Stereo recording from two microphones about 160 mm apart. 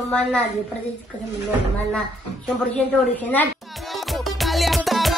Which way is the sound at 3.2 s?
10° left (ahead or behind).